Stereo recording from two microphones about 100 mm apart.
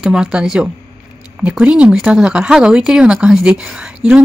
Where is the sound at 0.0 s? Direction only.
10° right (ahead or behind).